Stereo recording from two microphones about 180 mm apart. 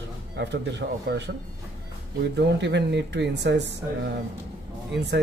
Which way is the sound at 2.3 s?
75° right (ahead or behind).